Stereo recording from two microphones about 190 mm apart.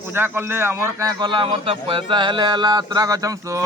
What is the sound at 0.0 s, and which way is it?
A man's voice, 10° right (ahead or behind).